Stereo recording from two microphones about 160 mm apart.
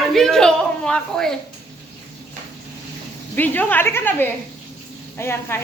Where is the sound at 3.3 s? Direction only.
10° left (ahead or behind).